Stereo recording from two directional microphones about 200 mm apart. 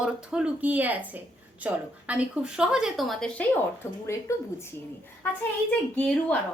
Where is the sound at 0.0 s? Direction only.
5° right (ahead or behind); by 4.4 s 15° left (ahead or behind).